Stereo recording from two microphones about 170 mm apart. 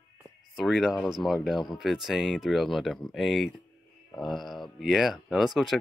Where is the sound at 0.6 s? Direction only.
Centre (ahead or behind).